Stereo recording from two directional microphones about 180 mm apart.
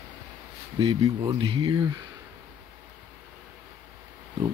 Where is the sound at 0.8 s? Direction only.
25° right (ahead or behind).